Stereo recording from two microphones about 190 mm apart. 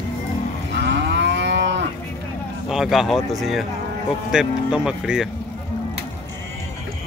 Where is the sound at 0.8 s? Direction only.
70° right (ahead or behind).